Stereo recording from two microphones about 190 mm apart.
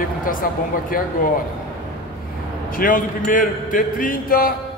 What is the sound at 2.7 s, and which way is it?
A man's voice, 45° left (ahead or behind).